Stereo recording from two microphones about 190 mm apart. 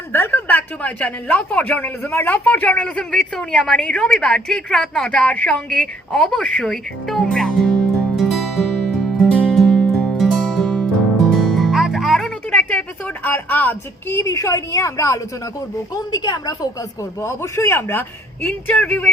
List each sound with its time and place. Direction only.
0.1 s speech: 10° left (ahead or behind)
8.1 s music: centre (ahead or behind)
13.2 s a woman's voice: 10° left (ahead or behind)